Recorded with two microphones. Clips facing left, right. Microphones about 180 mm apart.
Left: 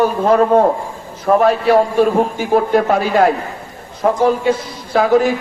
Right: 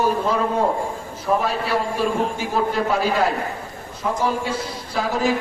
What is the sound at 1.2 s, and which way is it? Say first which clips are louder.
A man's voice: left 9 dB; 55° left (ahead or behind).